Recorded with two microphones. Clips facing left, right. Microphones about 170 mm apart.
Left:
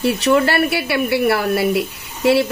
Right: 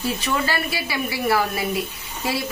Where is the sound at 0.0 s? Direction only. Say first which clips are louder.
Left 9 dB; 70° left (ahead or behind).